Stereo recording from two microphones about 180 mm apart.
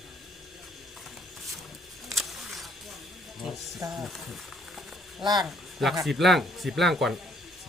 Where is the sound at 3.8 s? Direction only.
15° right (ahead or behind).